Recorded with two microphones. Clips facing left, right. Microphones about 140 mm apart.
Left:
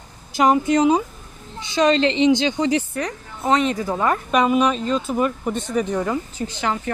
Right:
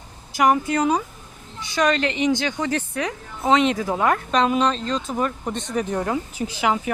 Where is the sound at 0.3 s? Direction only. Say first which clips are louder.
Left 3 dB; 25° left (ahead or behind).